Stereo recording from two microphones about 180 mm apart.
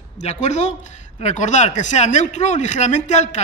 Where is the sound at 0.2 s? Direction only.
35° left (ahead or behind).